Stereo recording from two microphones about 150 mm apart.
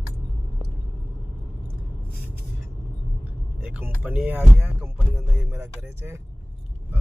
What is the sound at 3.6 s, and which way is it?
Speech, 10° right (ahead or behind).